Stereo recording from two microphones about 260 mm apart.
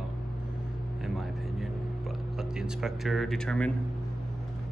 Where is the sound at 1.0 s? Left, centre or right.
Centre.